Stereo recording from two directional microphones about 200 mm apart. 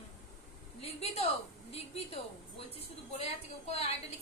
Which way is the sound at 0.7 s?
30° left (ahead or behind).